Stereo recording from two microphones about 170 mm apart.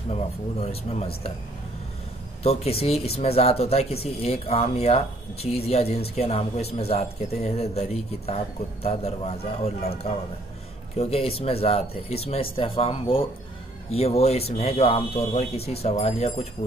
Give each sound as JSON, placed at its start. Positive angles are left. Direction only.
{"t": 0.1, "sound": "speech", "side_deg": 35}
{"t": 2.4, "sound": "speech", "side_deg": 35}